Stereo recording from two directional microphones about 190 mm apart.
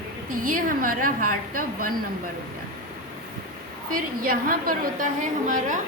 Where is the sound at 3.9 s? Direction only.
50° right (ahead or behind).